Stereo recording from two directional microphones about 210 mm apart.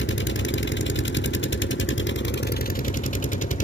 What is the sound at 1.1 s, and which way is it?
Vehicle, 65° left (ahead or behind).